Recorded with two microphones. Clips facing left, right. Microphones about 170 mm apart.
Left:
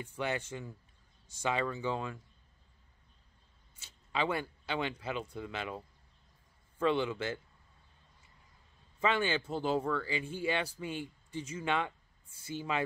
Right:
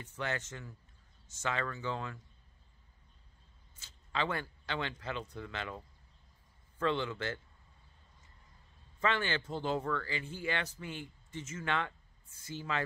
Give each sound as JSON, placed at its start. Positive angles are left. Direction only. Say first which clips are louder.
{"t": 0.0, "sound": "speech", "louder": "left 3 dB", "side_deg": 10}
{"t": 3.8, "sound": "speech", "louder": "left 2 dB", "side_deg": 10}
{"t": 9.0, "sound": "speech", "louder": "left 2 dB", "side_deg": 15}